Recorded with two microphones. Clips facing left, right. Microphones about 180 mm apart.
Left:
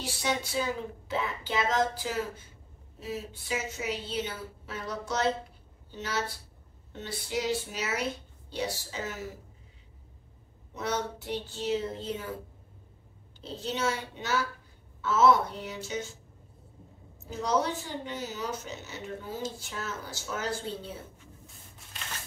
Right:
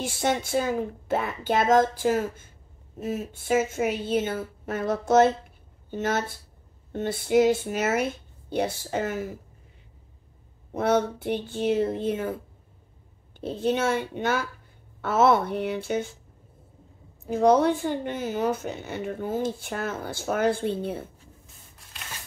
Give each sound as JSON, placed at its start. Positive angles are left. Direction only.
{"t": 0.0, "sound": "a woman's voice", "side_deg": -50}
{"t": 10.7, "sound": "a woman's voice", "side_deg": -55}
{"t": 13.4, "sound": "speech", "side_deg": -55}
{"t": 17.3, "sound": "speech", "side_deg": -55}